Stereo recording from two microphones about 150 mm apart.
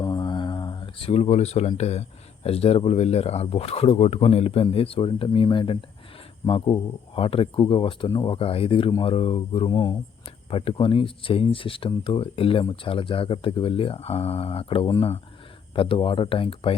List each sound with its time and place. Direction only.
0.0 s speech: 25° left (ahead or behind)